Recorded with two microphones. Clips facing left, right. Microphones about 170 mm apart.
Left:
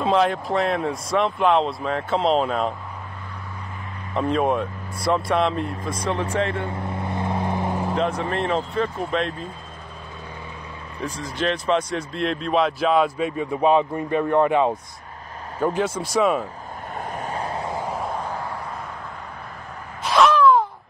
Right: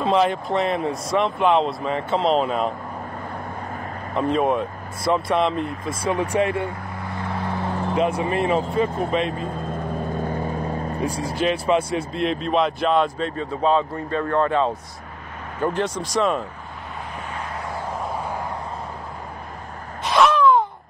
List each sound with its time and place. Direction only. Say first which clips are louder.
0.0 s speech: even; centre (ahead or behind)
4.1 s speech: right 1 dB; centre (ahead or behind)
6.3 s speech: right 3 dB; 10° right (ahead or behind)
6.7 s vehicle: left 4 dB; 25° left (ahead or behind)
7.9 s speech: right 5 dB; 10° right (ahead or behind)
9.6 s vehicle: right 13 dB; 55° right (ahead or behind)
11.1 s speech: right 1 dB; 10° right (ahead or behind); by 16.4 s 5° left (ahead or behind)
17.3 s vehicle: left 3 dB; 35° left (ahead or behind)
20.0 s a sound: left 1 dB; centre (ahead or behind)